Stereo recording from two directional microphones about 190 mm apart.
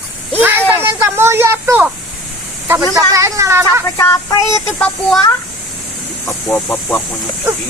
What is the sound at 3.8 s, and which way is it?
Speech, 15° left (ahead or behind).